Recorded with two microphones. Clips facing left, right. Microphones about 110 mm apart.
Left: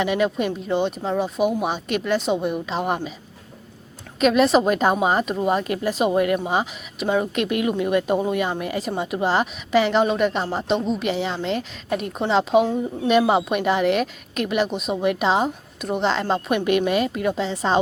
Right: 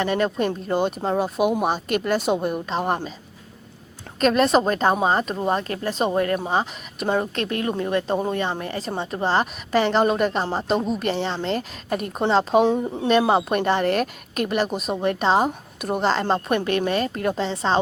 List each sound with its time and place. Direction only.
0.0 s a woman's voice: 5° left (ahead or behind)
4.2 s a woman's voice: 5° left (ahead or behind)
5.6 s a woman's voice: 15° left (ahead or behind)
12.6 s speech: 25° right (ahead or behind)
13.1 s a woman's voice: 5° left (ahead or behind)